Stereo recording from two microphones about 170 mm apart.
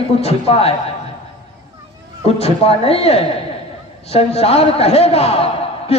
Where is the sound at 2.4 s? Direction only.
35° left (ahead or behind).